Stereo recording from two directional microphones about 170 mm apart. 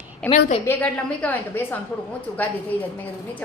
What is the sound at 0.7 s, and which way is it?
A woman's voice, 10° left (ahead or behind).